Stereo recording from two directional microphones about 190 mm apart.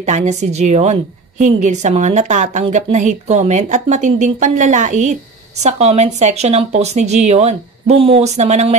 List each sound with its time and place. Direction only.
0.0 s a woman's voice: 40° right (ahead or behind)